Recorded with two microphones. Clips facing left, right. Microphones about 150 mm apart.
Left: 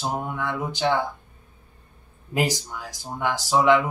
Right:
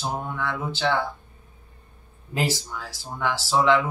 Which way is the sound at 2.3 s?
15° left (ahead or behind).